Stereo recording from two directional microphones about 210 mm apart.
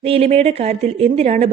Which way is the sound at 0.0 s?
30° right (ahead or behind).